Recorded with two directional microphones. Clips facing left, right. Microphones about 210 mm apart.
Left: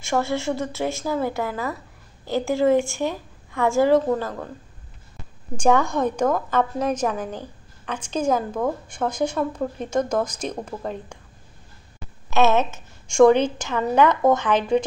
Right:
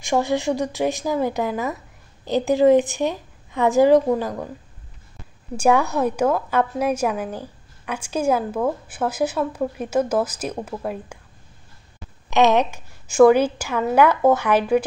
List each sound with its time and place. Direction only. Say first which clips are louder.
0.0 s a woman's voice: right 3 dB; 15° right (ahead or behind)
5.6 s a woman's voice: right 1 dB; 10° right (ahead or behind)
12.3 s a woman's voice: right 2 dB; 15° right (ahead or behind)